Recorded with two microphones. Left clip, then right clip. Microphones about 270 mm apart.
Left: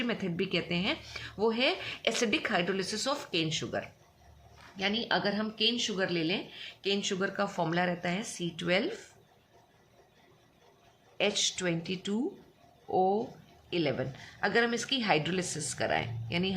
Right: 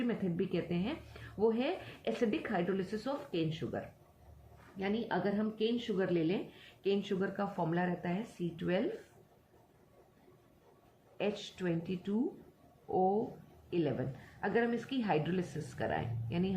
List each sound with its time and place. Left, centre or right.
0.0 s speech: left
11.2 s speech: left